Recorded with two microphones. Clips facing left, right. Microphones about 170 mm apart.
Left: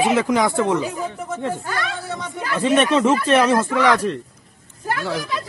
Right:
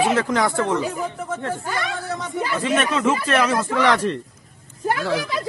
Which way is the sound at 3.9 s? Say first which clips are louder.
Left 1 dB; 5° left (ahead or behind).